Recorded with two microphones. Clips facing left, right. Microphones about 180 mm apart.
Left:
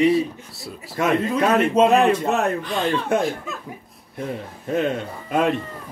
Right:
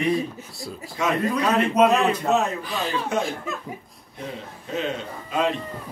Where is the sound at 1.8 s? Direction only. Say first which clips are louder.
Left 1 dB; 25° left (ahead or behind).